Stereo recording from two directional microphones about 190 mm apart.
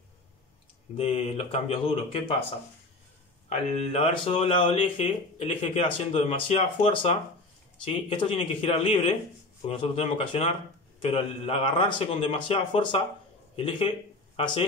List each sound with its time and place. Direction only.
0.9 s speech: 30° left (ahead or behind)
3.4 s speech: 35° left (ahead or behind)
14.3 s a sound: 25° left (ahead or behind)